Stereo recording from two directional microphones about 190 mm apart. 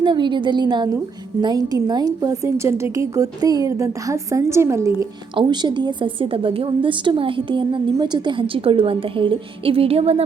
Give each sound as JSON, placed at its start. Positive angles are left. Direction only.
{"t": 0.0, "sound": "a woman's voice", "side_deg": -25}